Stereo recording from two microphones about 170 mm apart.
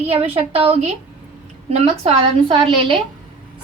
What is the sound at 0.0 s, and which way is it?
A woman's voice, 35° right (ahead or behind).